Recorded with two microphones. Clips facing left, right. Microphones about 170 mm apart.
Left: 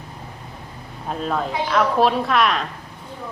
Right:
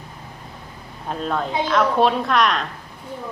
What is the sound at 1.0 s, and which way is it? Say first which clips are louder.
A woman's voice: even; centre (ahead or behind).